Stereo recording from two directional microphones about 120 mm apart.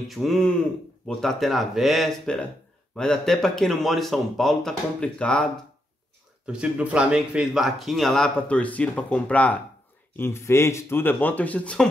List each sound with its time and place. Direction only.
0.1 s speech: centre (ahead or behind)
6.4 s speech: 10° right (ahead or behind); by 11.9 s 10° left (ahead or behind)